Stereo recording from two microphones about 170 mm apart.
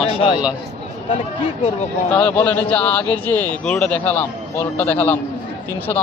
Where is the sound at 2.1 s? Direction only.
5° left (ahead or behind).